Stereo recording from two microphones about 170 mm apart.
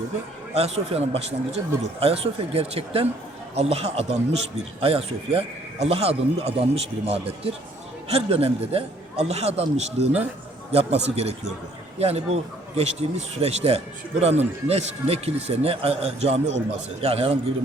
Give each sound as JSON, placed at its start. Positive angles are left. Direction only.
{"t": 0.5, "sound": "speech", "side_deg": -35}